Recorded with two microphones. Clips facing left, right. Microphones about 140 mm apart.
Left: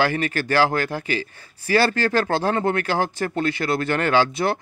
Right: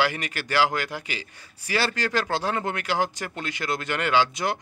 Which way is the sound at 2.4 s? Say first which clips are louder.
Left 6 dB; 35° left (ahead or behind).